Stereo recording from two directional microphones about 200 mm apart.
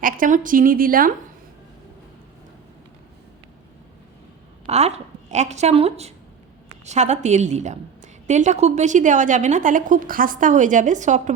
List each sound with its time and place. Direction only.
0.0 s a woman's voice: 40° right (ahead or behind)
4.6 s a woman's voice: 30° right (ahead or behind)